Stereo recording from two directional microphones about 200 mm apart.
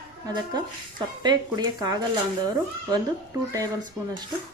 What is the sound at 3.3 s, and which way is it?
Speech, 15° right (ahead or behind).